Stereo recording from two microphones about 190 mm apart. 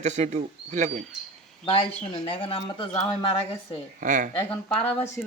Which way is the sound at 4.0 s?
45° right (ahead or behind).